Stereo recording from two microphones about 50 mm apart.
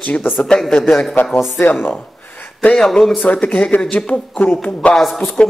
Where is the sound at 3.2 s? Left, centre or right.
Left.